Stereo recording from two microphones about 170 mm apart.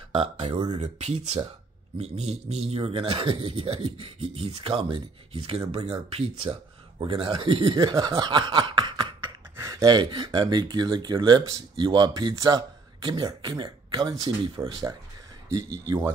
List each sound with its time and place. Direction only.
0.1 s a man's voice: 35° right (ahead or behind)